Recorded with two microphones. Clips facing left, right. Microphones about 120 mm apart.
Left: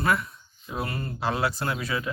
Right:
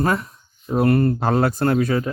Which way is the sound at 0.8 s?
60° right (ahead or behind).